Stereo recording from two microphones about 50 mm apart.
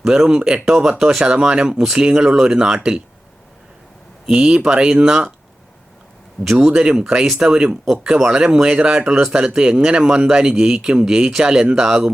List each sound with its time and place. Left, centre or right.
0.0 s speech: centre
4.4 s speech: centre
6.4 s speech: centre
6.7 s speech: centre